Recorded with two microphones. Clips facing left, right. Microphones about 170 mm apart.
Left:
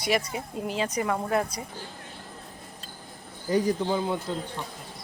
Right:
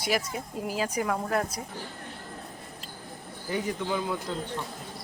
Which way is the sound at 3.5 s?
35° left (ahead or behind).